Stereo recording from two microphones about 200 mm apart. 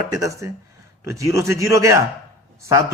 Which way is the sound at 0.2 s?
15° right (ahead or behind).